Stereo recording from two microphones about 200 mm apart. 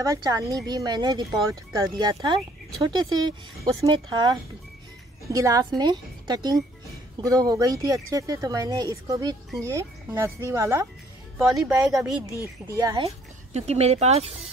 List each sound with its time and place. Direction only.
0.0 s speech: 15° right (ahead or behind)
11.3 s speech: 5° right (ahead or behind)
12.6 s speech: 15° right (ahead or behind)
13.0 s speech: 30° right (ahead or behind)